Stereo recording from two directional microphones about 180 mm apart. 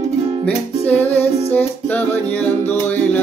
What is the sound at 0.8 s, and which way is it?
Music, 10° left (ahead or behind).